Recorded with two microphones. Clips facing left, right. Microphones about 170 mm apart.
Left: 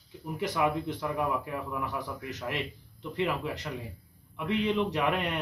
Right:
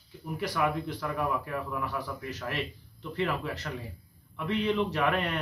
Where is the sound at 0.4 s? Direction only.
20° left (ahead or behind).